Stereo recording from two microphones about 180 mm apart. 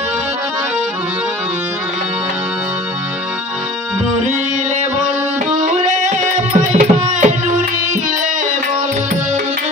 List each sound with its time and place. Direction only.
5.8 s tabla: 45° right (ahead or behind)